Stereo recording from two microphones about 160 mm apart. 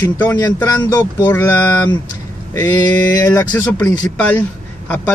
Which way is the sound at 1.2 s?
10° left (ahead or behind).